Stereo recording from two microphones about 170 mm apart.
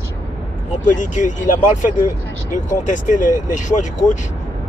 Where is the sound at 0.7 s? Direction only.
50° left (ahead or behind).